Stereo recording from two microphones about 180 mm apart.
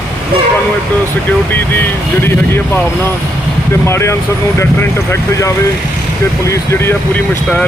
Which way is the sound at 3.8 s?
15° left (ahead or behind).